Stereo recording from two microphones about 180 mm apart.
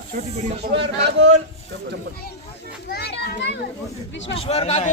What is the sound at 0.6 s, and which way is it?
Speech, 70° right (ahead or behind).